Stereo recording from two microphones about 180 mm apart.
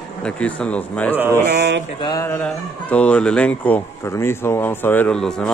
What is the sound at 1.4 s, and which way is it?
Speech, 65° right (ahead or behind).